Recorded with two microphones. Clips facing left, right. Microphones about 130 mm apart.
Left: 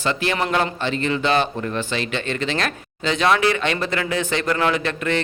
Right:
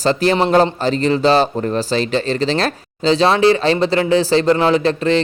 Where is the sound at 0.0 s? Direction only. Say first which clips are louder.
Right 7 dB; 35° right (ahead or behind).